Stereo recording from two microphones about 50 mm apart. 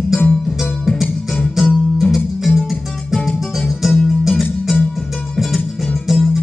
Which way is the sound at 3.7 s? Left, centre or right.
Centre.